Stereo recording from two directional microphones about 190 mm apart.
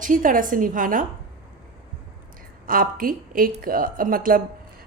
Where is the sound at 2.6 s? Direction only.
45° right (ahead or behind).